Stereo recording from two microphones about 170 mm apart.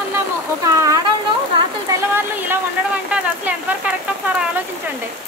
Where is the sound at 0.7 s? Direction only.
15° right (ahead or behind).